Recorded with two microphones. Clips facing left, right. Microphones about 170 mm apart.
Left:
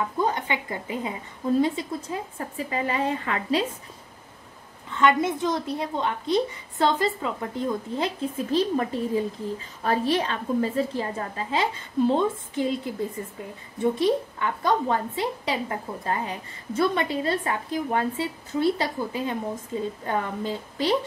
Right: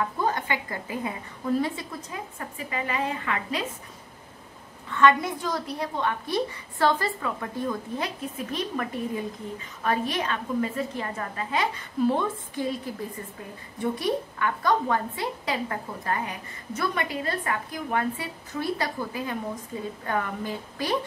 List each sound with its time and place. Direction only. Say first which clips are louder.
0.2 s a woman's voice: left 4 dB; 20° left (ahead or behind)
4.9 s a woman's voice: even; 20° left (ahead or behind)
13.9 s a woman's voice: left 4 dB; 25° left (ahead or behind)